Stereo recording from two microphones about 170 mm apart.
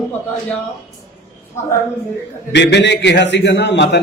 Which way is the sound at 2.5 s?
90° left.